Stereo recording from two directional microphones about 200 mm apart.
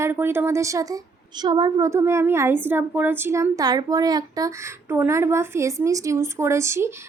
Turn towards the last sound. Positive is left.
turn(degrees=-15)  # may be behind; listen again after turning